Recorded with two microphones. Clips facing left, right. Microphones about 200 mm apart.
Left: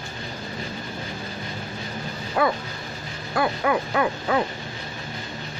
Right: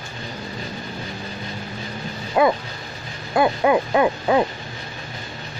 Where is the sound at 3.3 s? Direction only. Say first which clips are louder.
Right 5 dB; 20° right (ahead or behind).